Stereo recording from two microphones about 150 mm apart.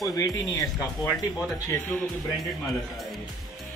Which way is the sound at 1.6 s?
15° left (ahead or behind).